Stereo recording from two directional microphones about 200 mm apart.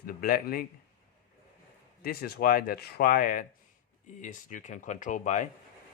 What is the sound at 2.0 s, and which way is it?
Speech, 50° left (ahead or behind).